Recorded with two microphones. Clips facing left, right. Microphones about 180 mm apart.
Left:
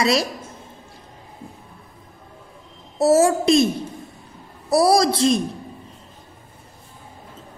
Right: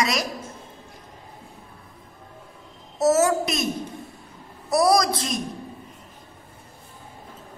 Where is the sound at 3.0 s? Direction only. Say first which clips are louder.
Left 4 dB; 30° left (ahead or behind).